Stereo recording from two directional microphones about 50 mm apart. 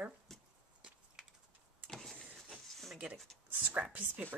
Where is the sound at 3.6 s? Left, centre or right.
Right.